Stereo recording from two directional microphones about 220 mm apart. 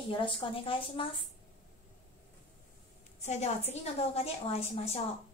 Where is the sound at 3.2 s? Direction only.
30° left (ahead or behind).